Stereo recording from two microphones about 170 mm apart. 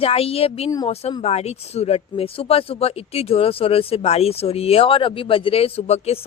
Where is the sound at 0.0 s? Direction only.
35° left (ahead or behind).